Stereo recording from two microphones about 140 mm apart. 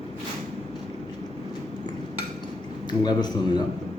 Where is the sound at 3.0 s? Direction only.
30° left (ahead or behind).